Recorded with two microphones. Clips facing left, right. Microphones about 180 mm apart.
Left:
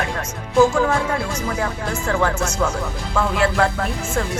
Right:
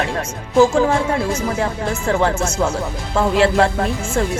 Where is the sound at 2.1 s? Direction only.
25° right (ahead or behind).